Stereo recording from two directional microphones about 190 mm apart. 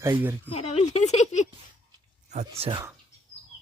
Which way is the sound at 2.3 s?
35° right (ahead or behind).